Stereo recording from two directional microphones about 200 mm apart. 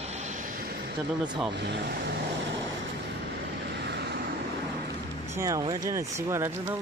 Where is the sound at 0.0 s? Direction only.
35° right (ahead or behind).